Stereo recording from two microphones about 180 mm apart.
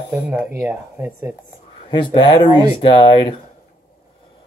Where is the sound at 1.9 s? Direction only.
25° left (ahead or behind).